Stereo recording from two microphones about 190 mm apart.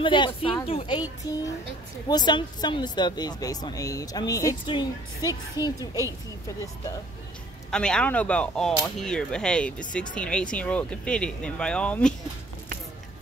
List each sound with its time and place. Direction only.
0.0 s speech: 25° left (ahead or behind)
2.0 s speech: 20° left (ahead or behind)
7.7 s speech: 5° left (ahead or behind)